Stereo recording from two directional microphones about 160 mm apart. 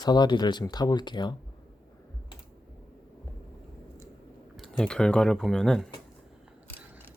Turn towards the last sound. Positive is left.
turn(degrees=5)  # may be behind; listen again after turning